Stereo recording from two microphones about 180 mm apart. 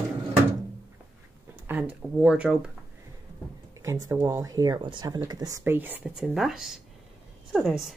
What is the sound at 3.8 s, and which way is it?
A woman's voice, 15° right (ahead or behind).